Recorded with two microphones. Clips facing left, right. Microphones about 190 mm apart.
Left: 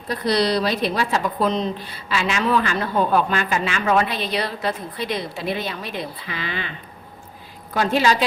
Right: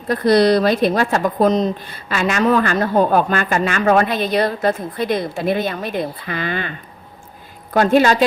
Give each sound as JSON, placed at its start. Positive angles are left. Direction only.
{"t": 0.1, "sound": "a woman's voice", "side_deg": -50}